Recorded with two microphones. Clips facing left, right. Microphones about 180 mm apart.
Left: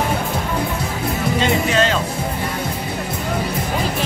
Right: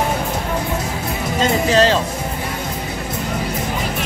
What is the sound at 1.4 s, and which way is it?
Speech, 35° right (ahead or behind).